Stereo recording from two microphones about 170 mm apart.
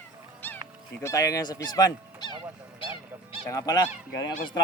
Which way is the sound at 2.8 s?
30° left (ahead or behind).